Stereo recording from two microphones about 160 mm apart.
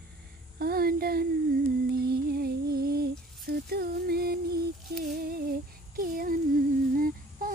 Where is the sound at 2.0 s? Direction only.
75° right (ahead or behind).